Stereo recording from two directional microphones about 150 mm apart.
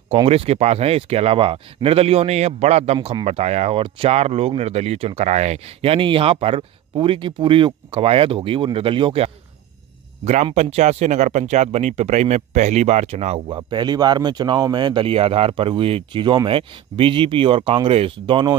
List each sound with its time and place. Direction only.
0.1 s speech: 40° right (ahead or behind)
10.2 s speech: 50° right (ahead or behind)
13.5 s speech: 30° right (ahead or behind)